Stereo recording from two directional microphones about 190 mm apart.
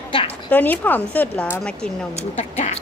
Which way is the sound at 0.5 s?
10° left (ahead or behind).